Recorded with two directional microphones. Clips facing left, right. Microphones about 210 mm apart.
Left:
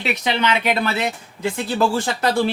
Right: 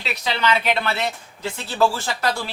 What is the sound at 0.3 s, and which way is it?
Speech, 20° left (ahead or behind).